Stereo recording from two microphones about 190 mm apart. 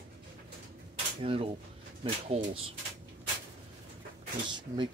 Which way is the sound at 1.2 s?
30° right (ahead or behind).